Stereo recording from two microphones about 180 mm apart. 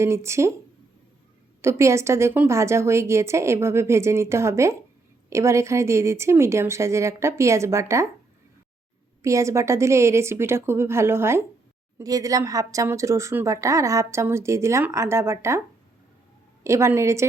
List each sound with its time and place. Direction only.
0.0 s speech: 15° right (ahead or behind)
1.6 s speech: 15° right (ahead or behind)
9.2 s speech: 15° right (ahead or behind)
16.6 s speech: 15° right (ahead or behind)